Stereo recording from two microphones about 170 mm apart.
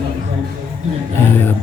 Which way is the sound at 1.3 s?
10° left (ahead or behind).